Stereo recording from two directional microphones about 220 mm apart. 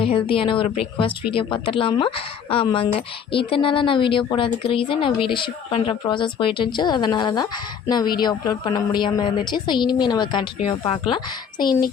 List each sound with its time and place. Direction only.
0.0 s a woman's voice: 25° left (ahead or behind)
11.6 s a woman's voice: 20° left (ahead or behind)